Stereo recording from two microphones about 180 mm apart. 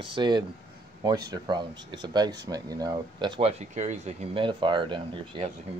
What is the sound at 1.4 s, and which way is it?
Speech, 25° right (ahead or behind).